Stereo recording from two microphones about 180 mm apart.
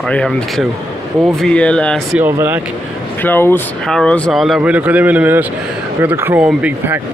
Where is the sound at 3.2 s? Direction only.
10° left (ahead or behind).